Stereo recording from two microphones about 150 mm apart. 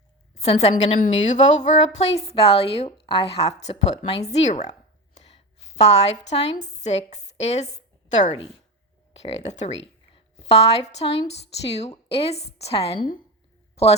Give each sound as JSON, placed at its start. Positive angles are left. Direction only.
{"t": 0.3, "sound": "a woman's voice", "side_deg": 45}
{"t": 0.9, "sound": "speech", "side_deg": 55}
{"t": 5.1, "sound": "a sound", "side_deg": 45}
{"t": 6.2, "sound": "a woman's voice", "side_deg": 45}